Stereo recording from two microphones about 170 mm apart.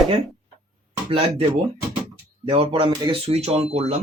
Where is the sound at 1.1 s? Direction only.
30° right (ahead or behind).